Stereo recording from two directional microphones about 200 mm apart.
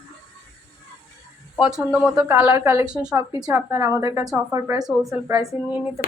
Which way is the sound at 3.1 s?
15° right (ahead or behind).